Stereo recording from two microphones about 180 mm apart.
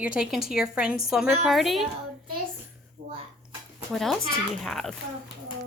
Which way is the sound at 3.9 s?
Centre (ahead or behind).